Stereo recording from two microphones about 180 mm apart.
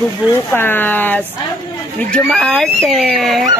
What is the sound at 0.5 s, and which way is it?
Speech, 10° left (ahead or behind).